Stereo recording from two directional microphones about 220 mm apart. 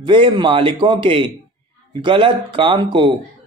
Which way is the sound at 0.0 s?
20° right (ahead or behind).